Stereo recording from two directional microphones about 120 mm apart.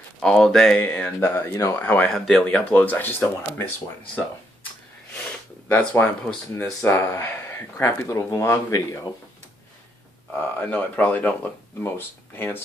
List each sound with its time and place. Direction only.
0.2 s speech: 5° left (ahead or behind)
0.7 s speech: 15° left (ahead or behind)
1.5 s speech: 25° left (ahead or behind)
1.8 s speech: 15° left (ahead or behind)
5.7 s speech: 15° left (ahead or behind)
10.4 s speech: 15° left (ahead or behind)